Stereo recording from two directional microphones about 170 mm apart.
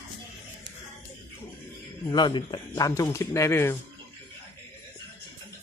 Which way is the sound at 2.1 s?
25° left (ahead or behind).